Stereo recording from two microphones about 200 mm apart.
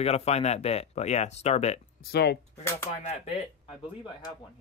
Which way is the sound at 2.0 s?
55° left (ahead or behind).